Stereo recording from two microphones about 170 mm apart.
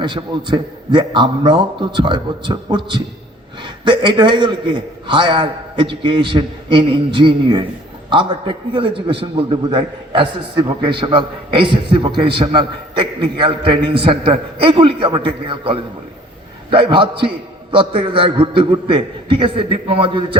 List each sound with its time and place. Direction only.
0.0 s a man's voice: 30° right (ahead or behind)